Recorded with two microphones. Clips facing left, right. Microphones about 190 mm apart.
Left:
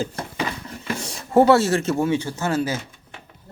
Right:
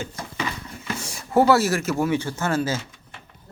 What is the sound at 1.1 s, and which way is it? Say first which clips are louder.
Speech: left 3 dB; 25° left (ahead or behind).